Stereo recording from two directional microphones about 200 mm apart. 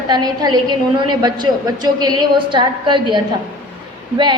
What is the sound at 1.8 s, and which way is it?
A woman's voice, 20° right (ahead or behind).